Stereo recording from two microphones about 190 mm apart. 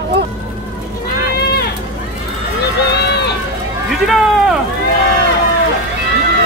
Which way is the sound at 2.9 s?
60° left (ahead or behind).